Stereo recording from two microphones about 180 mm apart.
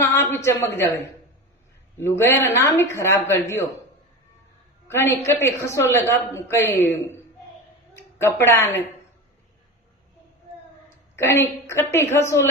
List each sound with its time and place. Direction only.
0.0 s a sound: 15° left (ahead or behind)
2.0 s a woman's voice: 15° left (ahead or behind)
4.9 s a woman's voice: 15° left (ahead or behind)
7.9 s speech: 15° left (ahead or behind)
10.8 s a woman's voice: 15° left (ahead or behind)